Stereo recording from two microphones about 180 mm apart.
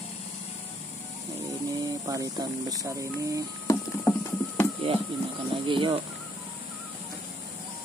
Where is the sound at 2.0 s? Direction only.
20° right (ahead or behind).